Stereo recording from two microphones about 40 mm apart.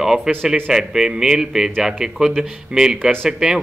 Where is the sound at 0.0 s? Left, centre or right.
Centre.